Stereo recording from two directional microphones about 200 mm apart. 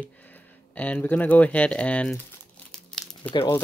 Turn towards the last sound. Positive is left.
turn(degrees=25)  # may be behind; listen again after turning